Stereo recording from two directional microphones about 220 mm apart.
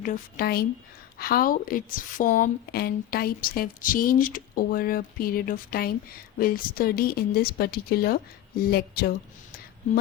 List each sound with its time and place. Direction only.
0.0 s a woman's voice: 40° left (ahead or behind)